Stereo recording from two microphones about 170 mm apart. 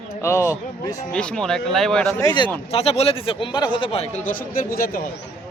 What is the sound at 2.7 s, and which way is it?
Speech, 35° left (ahead or behind).